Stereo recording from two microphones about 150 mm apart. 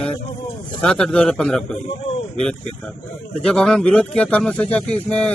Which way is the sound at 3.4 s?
5° left (ahead or behind).